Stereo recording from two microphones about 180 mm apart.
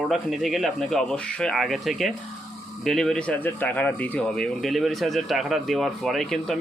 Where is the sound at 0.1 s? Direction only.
Centre (ahead or behind).